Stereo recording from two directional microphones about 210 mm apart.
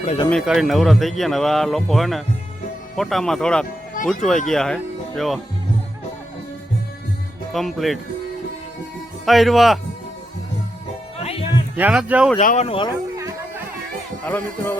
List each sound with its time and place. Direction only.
0.3 s a man's voice: centre (ahead or behind)
7.5 s a man's voice: centre (ahead or behind)
9.2 s a man's voice: centre (ahead or behind)
11.2 s music: 30° left (ahead or behind)
11.8 s a man's voice: 5° right (ahead or behind)
12.4 s speech: 35° left (ahead or behind)
14.3 s speech: 5° left (ahead or behind)